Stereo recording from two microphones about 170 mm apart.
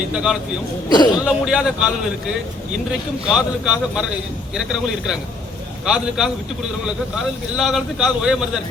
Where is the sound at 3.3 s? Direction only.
5° right (ahead or behind).